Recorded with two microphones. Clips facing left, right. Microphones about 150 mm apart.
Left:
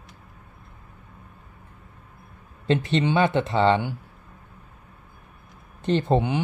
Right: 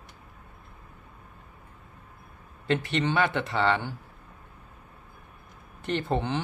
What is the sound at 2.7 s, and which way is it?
Speech, 20° left (ahead or behind).